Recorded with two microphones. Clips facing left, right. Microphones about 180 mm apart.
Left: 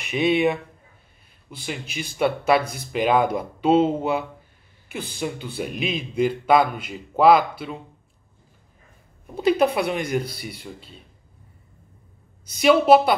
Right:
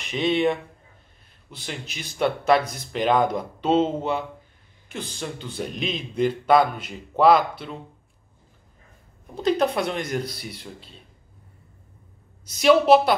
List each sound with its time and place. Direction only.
0.0 s speech: 10° left (ahead or behind)
2.0 s a man's voice: 5° left (ahead or behind)
9.4 s a man's voice: 10° left (ahead or behind)
12.4 s a man's voice: centre (ahead or behind)